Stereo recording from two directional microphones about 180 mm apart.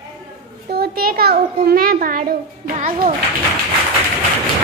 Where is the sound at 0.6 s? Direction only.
60° right (ahead or behind).